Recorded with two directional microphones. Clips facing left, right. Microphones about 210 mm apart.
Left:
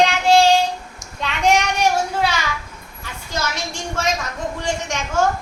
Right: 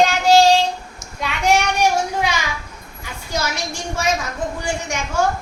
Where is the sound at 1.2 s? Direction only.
10° right (ahead or behind).